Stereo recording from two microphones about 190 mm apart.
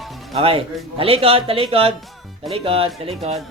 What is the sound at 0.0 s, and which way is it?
Music, centre (ahead or behind).